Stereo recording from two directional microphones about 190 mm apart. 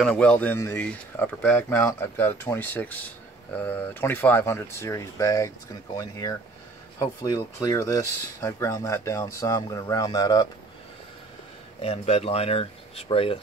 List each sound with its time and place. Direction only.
0.0 s speech: 5° left (ahead or behind)
11.8 s speech: 30° left (ahead or behind)